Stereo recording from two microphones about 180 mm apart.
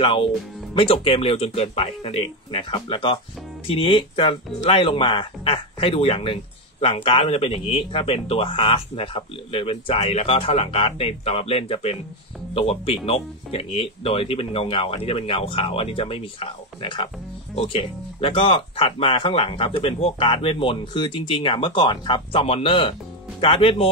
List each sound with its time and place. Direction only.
0.0 s speech: 25° left (ahead or behind)